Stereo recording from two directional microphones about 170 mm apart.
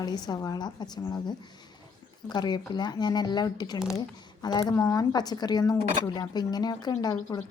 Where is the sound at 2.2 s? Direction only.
25° left (ahead or behind).